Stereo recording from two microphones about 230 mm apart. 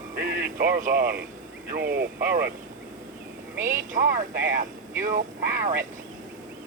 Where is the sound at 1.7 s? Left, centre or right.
Right.